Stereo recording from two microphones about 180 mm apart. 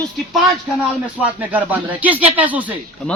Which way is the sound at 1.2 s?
10° right (ahead or behind).